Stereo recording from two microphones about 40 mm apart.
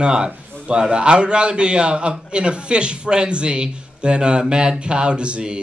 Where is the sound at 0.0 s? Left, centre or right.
Right.